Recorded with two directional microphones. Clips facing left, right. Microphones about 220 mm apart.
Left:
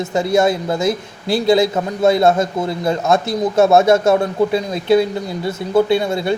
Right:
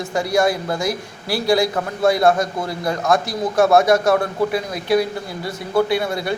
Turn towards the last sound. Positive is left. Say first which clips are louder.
# left 4 dB
turn(degrees=25)  # may be behind; listen again after turning